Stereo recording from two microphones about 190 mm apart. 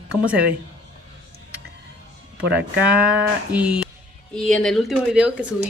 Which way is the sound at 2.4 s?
60° right (ahead or behind).